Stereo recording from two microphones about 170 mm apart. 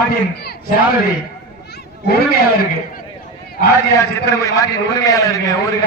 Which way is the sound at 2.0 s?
70° left (ahead or behind).